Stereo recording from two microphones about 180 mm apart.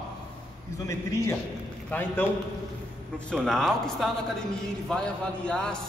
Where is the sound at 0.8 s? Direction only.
15° left (ahead or behind).